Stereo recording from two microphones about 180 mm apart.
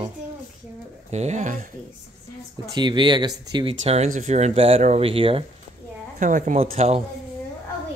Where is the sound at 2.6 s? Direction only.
25° right (ahead or behind).